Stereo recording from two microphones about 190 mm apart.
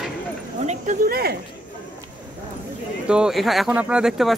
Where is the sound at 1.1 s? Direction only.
55° right (ahead or behind).